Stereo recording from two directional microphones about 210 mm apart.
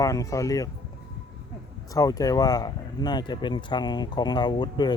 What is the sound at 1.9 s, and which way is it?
Speech, 15° left (ahead or behind).